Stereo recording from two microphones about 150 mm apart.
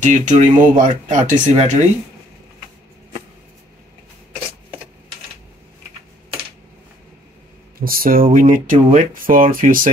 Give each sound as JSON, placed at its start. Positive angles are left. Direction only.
{"t": 0.0, "sound": "speech", "side_deg": -55}
{"t": 7.8, "sound": "speech", "side_deg": -80}